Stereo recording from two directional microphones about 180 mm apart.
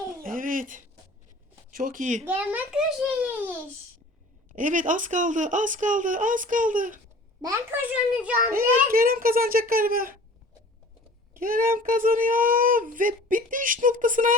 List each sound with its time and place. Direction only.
0.2 s a sound: 50° right (ahead or behind)
1.7 s speech: 50° right (ahead or behind)
2.2 s a child's voice: 10° right (ahead or behind)
4.5 s speech: 45° right (ahead or behind)
7.4 s a child's voice: 10° right (ahead or behind)
8.9 s speech: 55° right (ahead or behind)
11.3 s speech: 50° right (ahead or behind)